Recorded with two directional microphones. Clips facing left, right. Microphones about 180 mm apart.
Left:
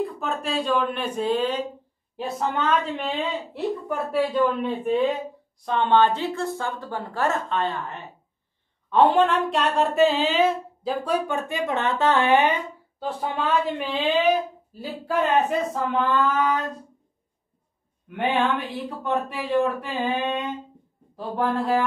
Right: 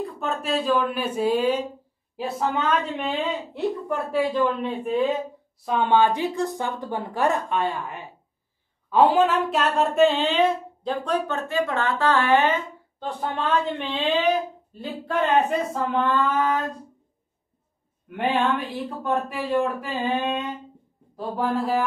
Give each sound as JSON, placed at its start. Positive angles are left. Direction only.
{"t": 0.0, "sound": "a woman's voice", "side_deg": 0}
{"t": 13.0, "sound": "speech", "side_deg": 5}
{"t": 18.0, "sound": "speech", "side_deg": 0}